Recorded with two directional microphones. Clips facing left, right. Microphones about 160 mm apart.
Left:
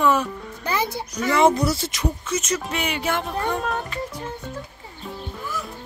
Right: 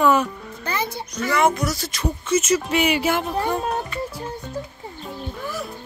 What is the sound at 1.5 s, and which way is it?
Speech, 30° left (ahead or behind).